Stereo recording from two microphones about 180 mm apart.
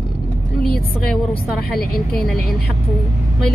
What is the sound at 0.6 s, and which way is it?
A woman's voice, 60° left (ahead or behind).